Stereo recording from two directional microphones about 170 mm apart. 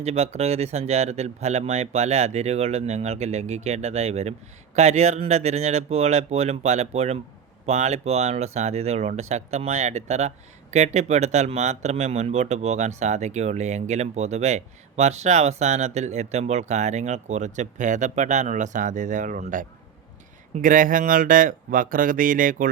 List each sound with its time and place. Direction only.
0.0 s speech: 40° right (ahead or behind)